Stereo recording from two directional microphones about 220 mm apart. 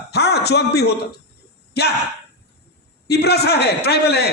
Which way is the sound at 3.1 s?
45° left (ahead or behind).